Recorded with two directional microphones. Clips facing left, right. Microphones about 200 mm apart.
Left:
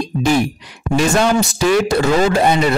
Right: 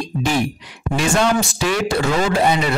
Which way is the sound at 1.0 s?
40° left (ahead or behind).